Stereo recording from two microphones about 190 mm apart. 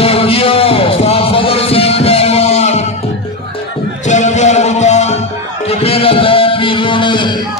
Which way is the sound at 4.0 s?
40° left (ahead or behind).